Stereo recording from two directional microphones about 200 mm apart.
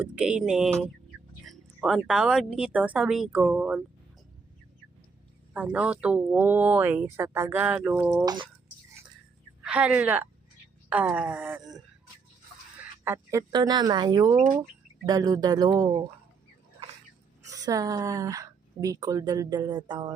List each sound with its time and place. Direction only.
0.0 s speech: 5° right (ahead or behind)
5.5 s speech: 5° right (ahead or behind)
9.6 s speech: 5° right (ahead or behind)
13.1 s speech: 20° right (ahead or behind)
17.5 s speech: 15° right (ahead or behind)